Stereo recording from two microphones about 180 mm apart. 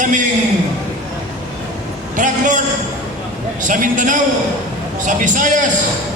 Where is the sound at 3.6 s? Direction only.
45° right (ahead or behind).